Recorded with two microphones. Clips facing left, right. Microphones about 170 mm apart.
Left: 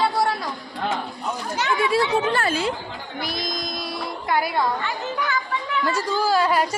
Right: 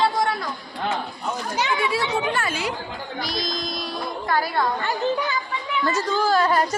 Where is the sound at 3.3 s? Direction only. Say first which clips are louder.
Right 1 dB; 55° left (ahead or behind).